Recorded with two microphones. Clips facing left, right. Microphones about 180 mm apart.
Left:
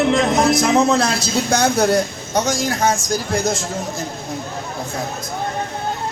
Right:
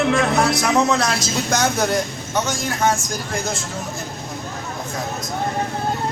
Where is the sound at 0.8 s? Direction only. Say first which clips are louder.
Left 2 dB; 30° left (ahead or behind).